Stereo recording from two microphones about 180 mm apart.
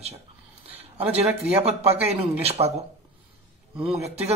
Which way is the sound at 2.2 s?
35° right (ahead or behind).